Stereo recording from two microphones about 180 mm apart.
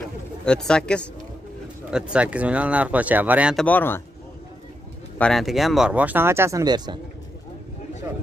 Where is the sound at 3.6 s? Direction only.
10° left (ahead or behind).